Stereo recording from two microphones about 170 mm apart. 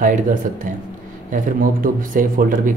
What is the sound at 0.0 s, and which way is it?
Speech, 50° right (ahead or behind).